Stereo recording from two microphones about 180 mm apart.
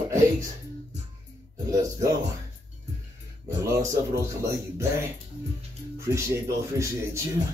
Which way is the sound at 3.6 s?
15° right (ahead or behind).